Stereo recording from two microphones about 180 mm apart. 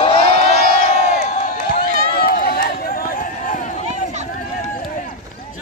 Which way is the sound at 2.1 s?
55° left (ahead or behind).